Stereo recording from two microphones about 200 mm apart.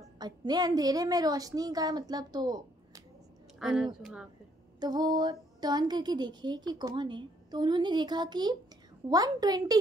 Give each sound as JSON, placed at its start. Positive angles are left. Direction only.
{"t": 0.0, "sound": "a woman's voice", "side_deg": -20}
{"t": 3.5, "sound": "a woman's voice", "side_deg": 0}
{"t": 4.7, "sound": "a sound", "side_deg": -20}